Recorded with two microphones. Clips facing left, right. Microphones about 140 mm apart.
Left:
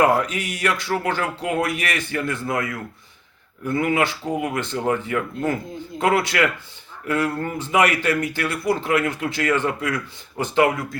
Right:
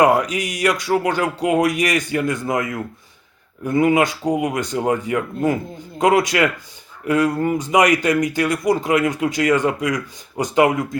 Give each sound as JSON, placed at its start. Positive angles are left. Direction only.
{"t": 0.0, "sound": "speech", "side_deg": -15}